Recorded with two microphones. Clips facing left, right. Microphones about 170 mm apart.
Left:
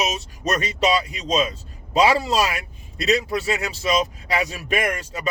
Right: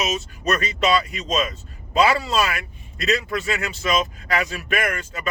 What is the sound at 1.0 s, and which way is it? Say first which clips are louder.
Speech: left 2 dB; 30° left (ahead or behind).